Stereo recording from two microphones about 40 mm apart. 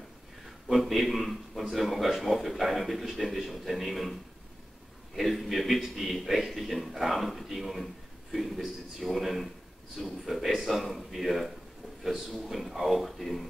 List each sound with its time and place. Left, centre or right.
0.7 s a man's voice: centre